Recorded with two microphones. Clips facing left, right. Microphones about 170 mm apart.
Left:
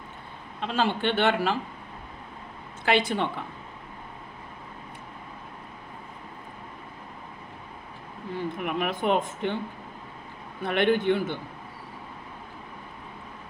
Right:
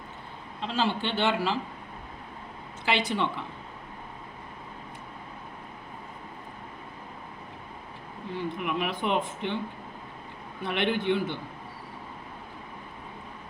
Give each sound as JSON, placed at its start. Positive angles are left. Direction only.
{"t": 0.6, "sound": "a man's voice", "side_deg": 55}
{"t": 2.8, "sound": "speech", "side_deg": 50}
{"t": 8.5, "sound": "speech", "side_deg": 50}
{"t": 10.6, "sound": "speech", "side_deg": 50}